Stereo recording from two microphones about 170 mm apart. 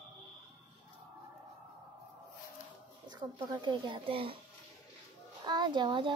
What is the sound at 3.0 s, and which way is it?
A child's voice, 25° right (ahead or behind).